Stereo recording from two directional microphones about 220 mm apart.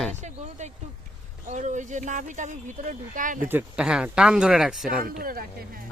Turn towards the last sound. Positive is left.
turn(degrees=-40)  # may be behind; listen again after turning